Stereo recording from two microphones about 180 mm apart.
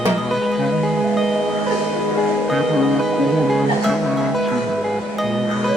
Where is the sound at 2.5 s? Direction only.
Centre (ahead or behind).